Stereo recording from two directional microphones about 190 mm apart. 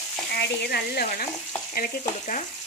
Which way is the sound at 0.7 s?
55° left (ahead or behind).